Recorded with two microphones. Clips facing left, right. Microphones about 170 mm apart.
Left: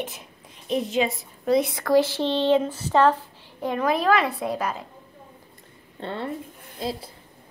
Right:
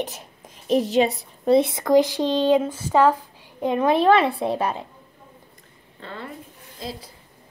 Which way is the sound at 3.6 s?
25° right (ahead or behind).